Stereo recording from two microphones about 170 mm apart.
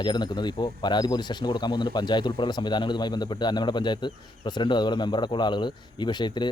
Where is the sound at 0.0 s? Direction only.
25° left (ahead or behind).